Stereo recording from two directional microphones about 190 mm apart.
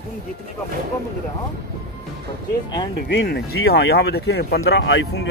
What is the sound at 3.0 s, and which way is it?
Speech, 60° left (ahead or behind).